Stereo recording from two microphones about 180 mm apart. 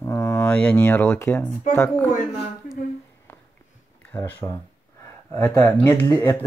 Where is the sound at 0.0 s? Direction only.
15° left (ahead or behind).